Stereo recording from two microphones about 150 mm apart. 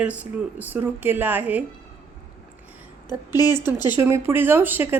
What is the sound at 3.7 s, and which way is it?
Speech, 25° left (ahead or behind).